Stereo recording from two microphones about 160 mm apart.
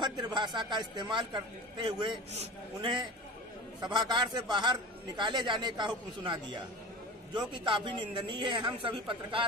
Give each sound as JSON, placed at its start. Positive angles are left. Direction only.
{"t": 0.0, "sound": "a man's voice", "side_deg": -30}
{"t": 3.8, "sound": "a man's voice", "side_deg": -25}